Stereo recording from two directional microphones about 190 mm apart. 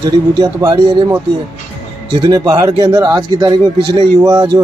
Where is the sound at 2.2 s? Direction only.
20° right (ahead or behind).